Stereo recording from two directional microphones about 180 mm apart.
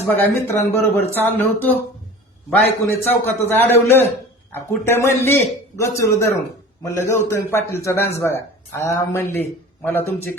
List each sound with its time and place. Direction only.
0.0 s speech: 10° left (ahead or behind)
2.8 s speech: 15° left (ahead or behind)